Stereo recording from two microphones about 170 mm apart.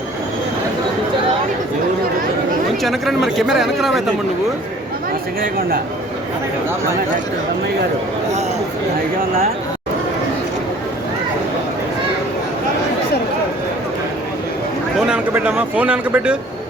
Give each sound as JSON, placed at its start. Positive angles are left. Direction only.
{"t": 2.8, "sound": "a man's voice", "side_deg": 0}
{"t": 5.4, "sound": "speech", "side_deg": -60}
{"t": 14.9, "sound": "a man's voice", "side_deg": -5}